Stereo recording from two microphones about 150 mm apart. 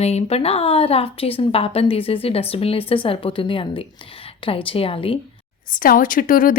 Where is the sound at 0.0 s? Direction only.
45° left (ahead or behind).